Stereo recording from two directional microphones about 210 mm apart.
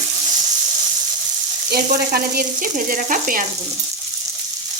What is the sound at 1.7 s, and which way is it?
Frying, 45° right (ahead or behind).